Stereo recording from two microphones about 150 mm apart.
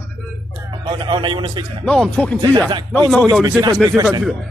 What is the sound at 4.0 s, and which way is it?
Speech, 25° right (ahead or behind).